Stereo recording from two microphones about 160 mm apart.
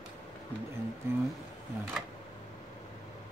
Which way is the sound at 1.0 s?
15° right (ahead or behind).